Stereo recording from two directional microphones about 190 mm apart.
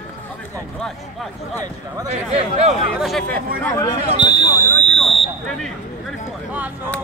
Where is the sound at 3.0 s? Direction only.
Centre (ahead or behind).